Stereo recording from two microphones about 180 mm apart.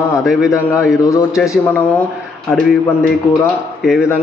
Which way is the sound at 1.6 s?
10° left (ahead or behind).